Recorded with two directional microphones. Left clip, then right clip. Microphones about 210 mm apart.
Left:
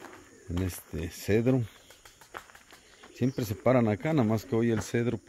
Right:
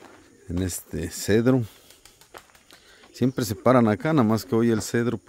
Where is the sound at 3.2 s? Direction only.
45° right (ahead or behind).